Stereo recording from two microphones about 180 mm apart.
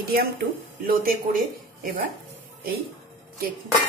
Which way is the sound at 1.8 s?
55° right (ahead or behind).